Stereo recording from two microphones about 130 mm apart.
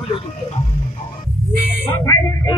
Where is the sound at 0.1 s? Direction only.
50° left (ahead or behind).